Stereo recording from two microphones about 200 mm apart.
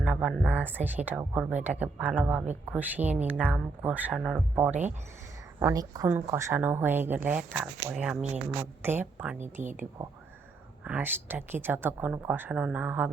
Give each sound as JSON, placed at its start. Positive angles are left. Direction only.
{"t": 0.0, "sound": "a woman's voice", "side_deg": -5}
{"t": 10.8, "sound": "a woman's voice", "side_deg": -10}